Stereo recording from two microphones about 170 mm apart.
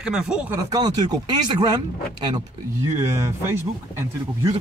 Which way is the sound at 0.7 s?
25° right (ahead or behind).